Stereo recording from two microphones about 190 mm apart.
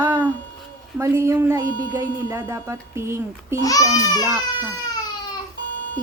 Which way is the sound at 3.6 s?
20° left (ahead or behind).